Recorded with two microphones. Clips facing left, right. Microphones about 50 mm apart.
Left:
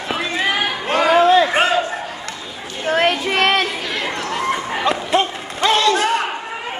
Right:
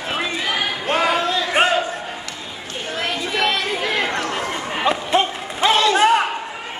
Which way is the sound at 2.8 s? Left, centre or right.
Left.